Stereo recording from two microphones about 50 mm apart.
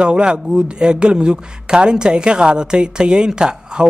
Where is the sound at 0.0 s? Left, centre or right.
Right.